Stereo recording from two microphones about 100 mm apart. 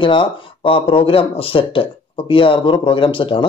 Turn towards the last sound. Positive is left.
turn(degrees=60)  # may be behind; listen again after turning